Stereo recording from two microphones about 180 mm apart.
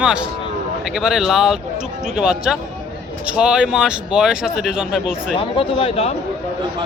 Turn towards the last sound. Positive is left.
turn(degrees=35)  # may be behind; listen again after turning